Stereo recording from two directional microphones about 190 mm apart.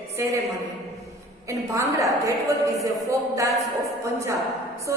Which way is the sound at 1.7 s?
15° right (ahead or behind).